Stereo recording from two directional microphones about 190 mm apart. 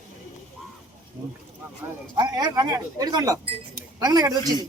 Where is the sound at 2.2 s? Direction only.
20° right (ahead or behind).